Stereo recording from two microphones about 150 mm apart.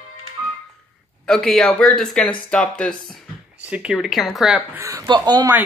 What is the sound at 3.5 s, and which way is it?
Speech, 10° right (ahead or behind).